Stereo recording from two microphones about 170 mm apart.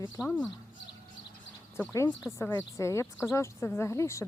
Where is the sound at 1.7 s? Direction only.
15° left (ahead or behind).